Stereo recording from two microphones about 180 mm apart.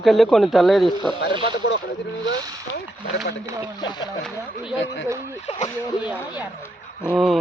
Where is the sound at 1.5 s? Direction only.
80° left.